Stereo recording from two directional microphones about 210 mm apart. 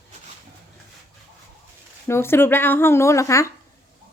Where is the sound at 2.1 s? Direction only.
10° left (ahead or behind).